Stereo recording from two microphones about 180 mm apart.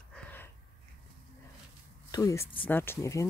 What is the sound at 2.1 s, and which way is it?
Speech, 20° left (ahead or behind).